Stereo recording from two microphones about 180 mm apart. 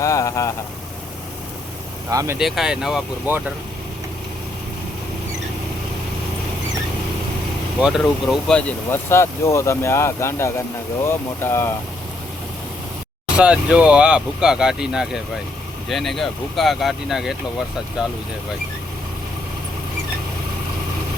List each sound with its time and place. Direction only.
0.0 s speech: 15° left (ahead or behind)
2.0 s speech: 15° right (ahead or behind)
2.4 s speech: centre (ahead or behind)
7.8 s speech: 5° right (ahead or behind); by 11.7 s 15° left (ahead or behind)
13.4 s speech: 5° right (ahead or behind)